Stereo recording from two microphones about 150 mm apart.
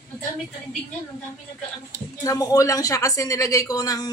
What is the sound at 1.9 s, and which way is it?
Speech, 25° left (ahead or behind).